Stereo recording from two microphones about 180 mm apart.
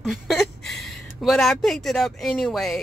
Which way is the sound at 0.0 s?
Centre (ahead or behind).